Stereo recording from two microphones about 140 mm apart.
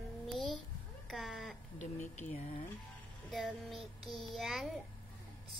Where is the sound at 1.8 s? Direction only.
55° left (ahead or behind).